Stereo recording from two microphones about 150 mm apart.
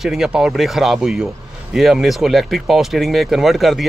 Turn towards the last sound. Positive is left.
turn(degrees=0)  # may be behind; listen again after turning